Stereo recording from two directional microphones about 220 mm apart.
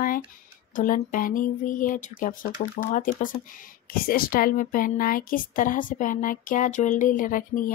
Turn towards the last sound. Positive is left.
turn(degrees=40)  # may be behind; listen again after turning